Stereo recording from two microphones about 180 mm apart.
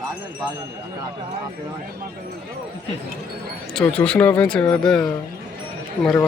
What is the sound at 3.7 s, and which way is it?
Speech, 5° left (ahead or behind).